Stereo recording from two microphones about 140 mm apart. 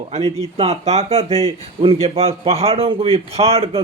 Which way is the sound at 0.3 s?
40° right (ahead or behind).